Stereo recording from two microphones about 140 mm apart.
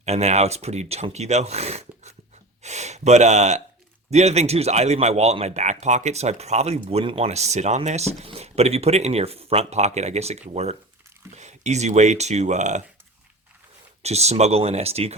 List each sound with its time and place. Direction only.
0.0 s speech: 50° right (ahead or behind)
7.3 s speech: 50° right (ahead or behind)
14.0 s speech: 50° right (ahead or behind)